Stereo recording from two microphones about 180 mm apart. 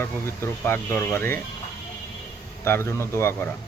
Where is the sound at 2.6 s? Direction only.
15° left (ahead or behind).